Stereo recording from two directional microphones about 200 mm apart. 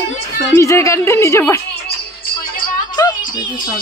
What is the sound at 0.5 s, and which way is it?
A woman's voice, 15° left (ahead or behind).